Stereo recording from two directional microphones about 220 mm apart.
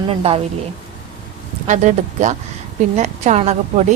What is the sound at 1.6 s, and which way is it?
A woman's voice, 35° right (ahead or behind).